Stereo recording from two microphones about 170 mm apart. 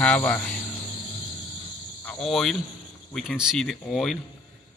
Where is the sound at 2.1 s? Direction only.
Centre (ahead or behind).